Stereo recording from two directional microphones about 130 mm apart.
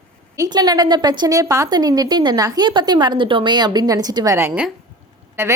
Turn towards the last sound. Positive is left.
turn(degrees=-20)  # may be behind; listen again after turning